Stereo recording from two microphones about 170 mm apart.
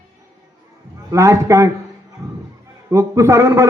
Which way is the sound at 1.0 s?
20° right (ahead or behind).